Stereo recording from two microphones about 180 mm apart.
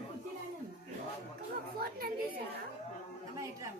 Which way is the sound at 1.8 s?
60° right (ahead or behind).